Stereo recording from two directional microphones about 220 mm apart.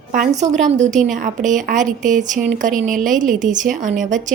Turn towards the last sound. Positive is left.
turn(degrees=-35)  # may be behind; listen again after turning